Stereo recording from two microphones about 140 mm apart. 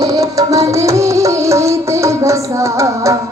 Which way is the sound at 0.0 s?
25° right (ahead or behind).